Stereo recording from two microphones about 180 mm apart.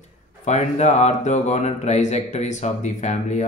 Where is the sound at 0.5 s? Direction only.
40° left (ahead or behind).